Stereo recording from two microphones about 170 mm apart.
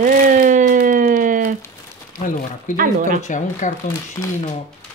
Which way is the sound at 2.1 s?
50° left (ahead or behind).